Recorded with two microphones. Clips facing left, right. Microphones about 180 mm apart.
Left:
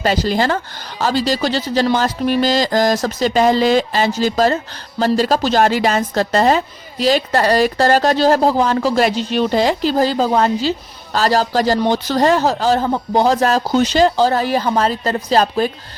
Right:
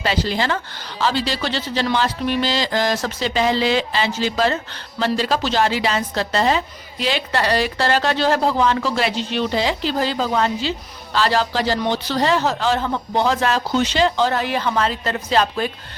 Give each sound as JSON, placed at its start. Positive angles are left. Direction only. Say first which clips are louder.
{"t": 0.0, "sound": "speech", "louder": "left 5 dB", "side_deg": 45}